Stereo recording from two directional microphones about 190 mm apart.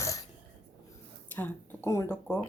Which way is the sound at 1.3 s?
10° left (ahead or behind).